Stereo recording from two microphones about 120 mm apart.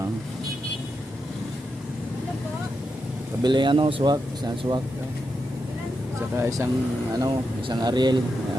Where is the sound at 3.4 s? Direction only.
40° right (ahead or behind).